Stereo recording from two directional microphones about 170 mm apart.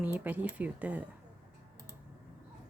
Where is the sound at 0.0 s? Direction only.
10° right (ahead or behind).